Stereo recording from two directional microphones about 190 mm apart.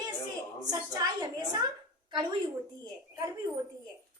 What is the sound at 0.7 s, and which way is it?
A child's voice, 20° right (ahead or behind).